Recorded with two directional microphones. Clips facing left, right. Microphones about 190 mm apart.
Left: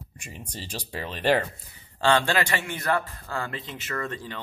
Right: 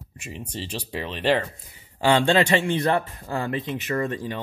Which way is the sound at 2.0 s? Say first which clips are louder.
Right 4 dB; 15° right (ahead or behind).